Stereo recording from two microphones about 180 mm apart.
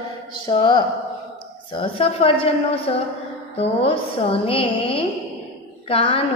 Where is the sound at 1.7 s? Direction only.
30° left (ahead or behind).